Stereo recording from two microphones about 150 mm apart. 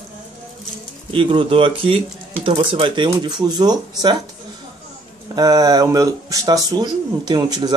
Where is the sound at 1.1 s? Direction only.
35° right (ahead or behind).